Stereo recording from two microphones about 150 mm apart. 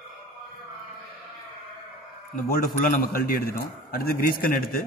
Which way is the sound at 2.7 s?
80° left.